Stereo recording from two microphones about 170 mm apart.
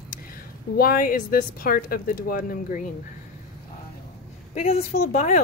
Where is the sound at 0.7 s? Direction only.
60° left (ahead or behind).